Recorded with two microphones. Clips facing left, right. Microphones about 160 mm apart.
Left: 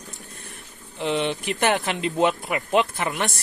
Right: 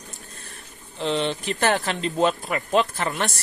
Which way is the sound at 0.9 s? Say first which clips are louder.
Even; 15° left (ahead or behind).